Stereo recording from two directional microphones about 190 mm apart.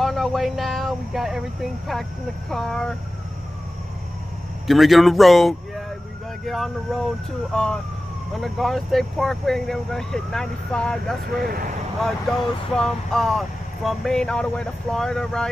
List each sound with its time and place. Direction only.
0.0 s speech: centre (ahead or behind)
4.6 s speech: centre (ahead or behind)
11.3 s speech: 50° right (ahead or behind)
12.0 s speech: 5° left (ahead or behind)